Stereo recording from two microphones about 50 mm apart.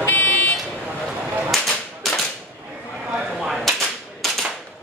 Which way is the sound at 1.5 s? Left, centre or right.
Centre.